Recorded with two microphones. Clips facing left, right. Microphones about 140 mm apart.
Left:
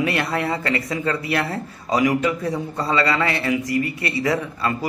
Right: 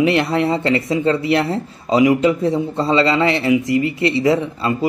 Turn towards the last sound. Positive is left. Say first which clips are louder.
# right 5 dB
turn(degrees=-25)  # may be behind; listen again after turning